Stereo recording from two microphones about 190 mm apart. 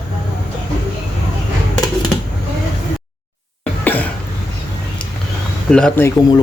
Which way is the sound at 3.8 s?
10° left (ahead or behind).